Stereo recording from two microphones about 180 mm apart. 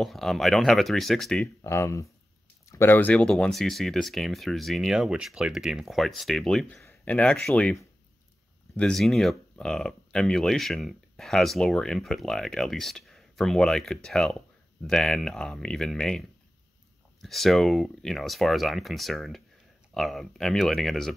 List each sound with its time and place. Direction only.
0.0 s speech: centre (ahead or behind)
1.6 s speech: 15° left (ahead or behind)